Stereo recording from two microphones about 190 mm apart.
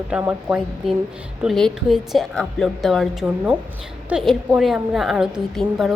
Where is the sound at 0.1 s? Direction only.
5° right (ahead or behind).